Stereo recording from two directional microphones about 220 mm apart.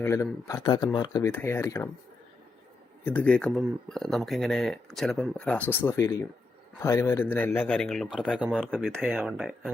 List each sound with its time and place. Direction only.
0.0 s a man's voice: 15° left (ahead or behind)
3.0 s a man's voice: 5° left (ahead or behind)